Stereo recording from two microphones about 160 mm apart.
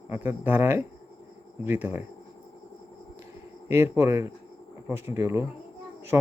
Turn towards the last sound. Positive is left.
turn(degrees=-20)  # may be behind; listen again after turning